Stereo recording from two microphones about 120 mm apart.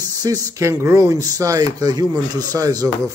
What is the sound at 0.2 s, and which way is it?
A man's voice, 30° right (ahead or behind).